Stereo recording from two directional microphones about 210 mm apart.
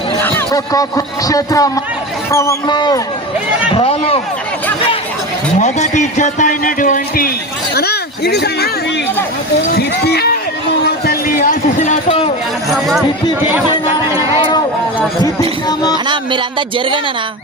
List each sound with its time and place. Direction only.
0.2 s speech: 15° left (ahead or behind)
5.5 s a man's voice: 35° left (ahead or behind)
9.7 s speech: 50° left (ahead or behind); by 12.3 s 30° left (ahead or behind)
12.7 s speech: centre (ahead or behind)
15.2 s speech: 20° left (ahead or behind)
16.0 s speech: 20° right (ahead or behind)